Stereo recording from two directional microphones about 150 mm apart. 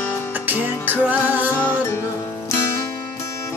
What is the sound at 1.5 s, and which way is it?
Music, 10° left (ahead or behind).